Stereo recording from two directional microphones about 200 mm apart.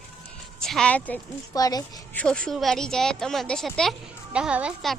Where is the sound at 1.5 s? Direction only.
20° left (ahead or behind).